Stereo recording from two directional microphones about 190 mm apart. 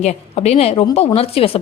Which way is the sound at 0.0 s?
35° left (ahead or behind).